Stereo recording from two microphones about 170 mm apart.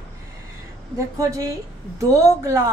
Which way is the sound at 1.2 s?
20° right (ahead or behind).